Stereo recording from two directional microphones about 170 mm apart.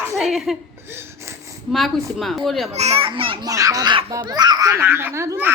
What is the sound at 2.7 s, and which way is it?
Speech, 40° right (ahead or behind).